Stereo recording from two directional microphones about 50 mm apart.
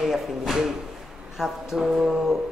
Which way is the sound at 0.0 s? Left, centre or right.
Centre.